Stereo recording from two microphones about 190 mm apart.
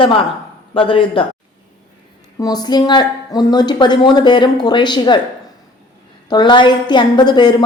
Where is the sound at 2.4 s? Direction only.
20° left (ahead or behind).